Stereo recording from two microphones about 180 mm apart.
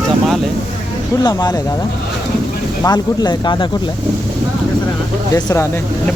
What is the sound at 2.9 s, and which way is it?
Speech, 20° left (ahead or behind).